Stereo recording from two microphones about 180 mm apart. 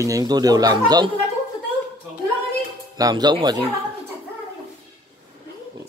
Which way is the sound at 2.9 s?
20° right (ahead or behind).